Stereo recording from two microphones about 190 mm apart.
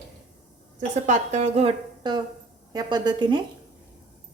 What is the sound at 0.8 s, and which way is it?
A woman's voice, 35° right (ahead or behind).